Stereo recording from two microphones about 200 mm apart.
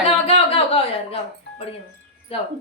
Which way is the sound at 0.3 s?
30° left (ahead or behind).